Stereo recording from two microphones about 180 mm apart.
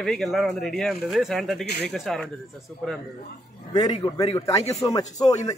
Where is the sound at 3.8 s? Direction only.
20° left (ahead or behind).